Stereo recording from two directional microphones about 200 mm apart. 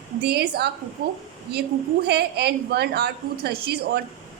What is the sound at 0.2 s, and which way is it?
A woman's voice, 55° right (ahead or behind).